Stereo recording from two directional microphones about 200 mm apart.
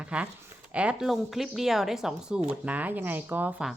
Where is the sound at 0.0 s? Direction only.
5° right (ahead or behind).